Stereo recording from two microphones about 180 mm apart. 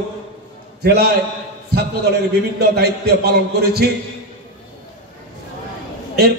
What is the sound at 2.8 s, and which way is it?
A man's voice, 60° right (ahead or behind).